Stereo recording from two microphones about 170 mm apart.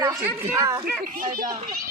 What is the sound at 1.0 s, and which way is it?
Speech, 55° right (ahead or behind).